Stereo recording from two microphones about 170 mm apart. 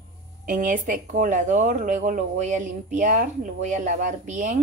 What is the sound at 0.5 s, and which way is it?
Speech, 50° right (ahead or behind).